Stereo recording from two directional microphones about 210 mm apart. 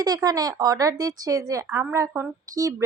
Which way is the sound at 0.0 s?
20° right (ahead or behind).